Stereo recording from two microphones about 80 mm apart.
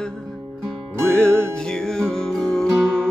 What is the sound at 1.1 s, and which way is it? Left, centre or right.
Music, centre.